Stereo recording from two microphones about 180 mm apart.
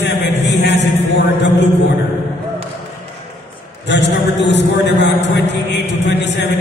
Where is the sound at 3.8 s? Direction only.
75° left (ahead or behind).